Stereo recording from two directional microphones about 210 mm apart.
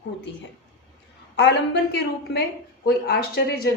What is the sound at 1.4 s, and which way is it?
A woman's voice, 55° left (ahead or behind).